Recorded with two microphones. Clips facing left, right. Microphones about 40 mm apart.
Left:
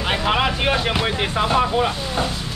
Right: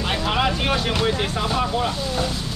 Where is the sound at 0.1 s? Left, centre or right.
Left.